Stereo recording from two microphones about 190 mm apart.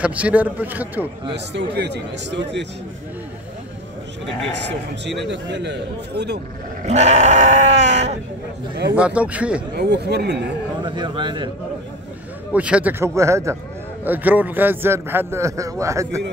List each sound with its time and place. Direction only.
0.0 s a man's voice: 5° right (ahead or behind)
1.3 s speech: 65° right (ahead or behind)
5.0 s speech: 65° right (ahead or behind)
6.9 s sheep: 35° right (ahead or behind)
8.9 s a man's voice: 5° right (ahead or behind)
9.8 s speech: 60° right (ahead or behind)
10.8 s speech: 25° right (ahead or behind)
12.5 s a man's voice: 5° right (ahead or behind)